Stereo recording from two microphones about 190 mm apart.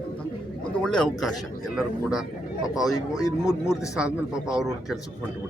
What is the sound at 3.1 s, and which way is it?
Speech, 20° left (ahead or behind).